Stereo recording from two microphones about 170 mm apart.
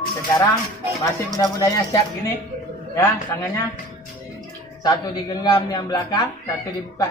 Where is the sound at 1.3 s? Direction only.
20° left (ahead or behind).